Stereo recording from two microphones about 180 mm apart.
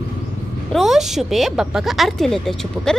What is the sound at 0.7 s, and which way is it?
Speech, centre (ahead or behind).